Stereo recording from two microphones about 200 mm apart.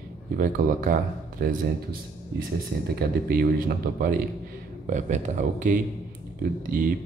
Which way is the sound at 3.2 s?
45° right (ahead or behind).